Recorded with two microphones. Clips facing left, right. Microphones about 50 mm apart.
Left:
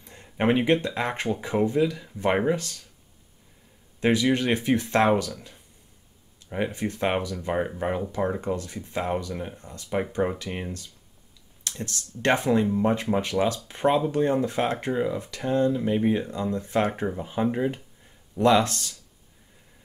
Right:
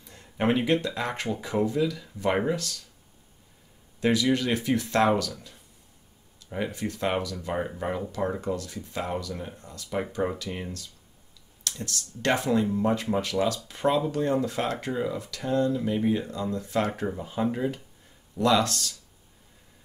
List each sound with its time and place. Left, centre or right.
0.0 s a sound: left
0.8 s speech: left
4.0 s speech: left
5.1 s speech: centre
6.5 s speech: left